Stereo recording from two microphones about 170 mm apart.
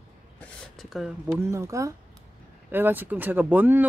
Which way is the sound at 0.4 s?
5° left (ahead or behind).